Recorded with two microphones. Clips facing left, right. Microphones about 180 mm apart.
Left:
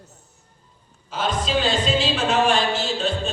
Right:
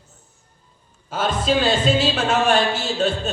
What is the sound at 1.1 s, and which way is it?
A man's voice, 45° right (ahead or behind).